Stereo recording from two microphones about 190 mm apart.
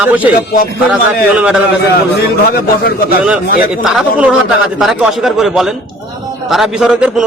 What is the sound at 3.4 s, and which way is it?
Speech, 50° left (ahead or behind).